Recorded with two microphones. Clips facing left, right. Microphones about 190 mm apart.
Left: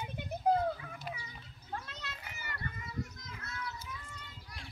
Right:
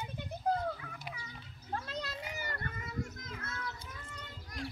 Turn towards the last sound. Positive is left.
turn(degrees=-45)  # may be behind; listen again after turning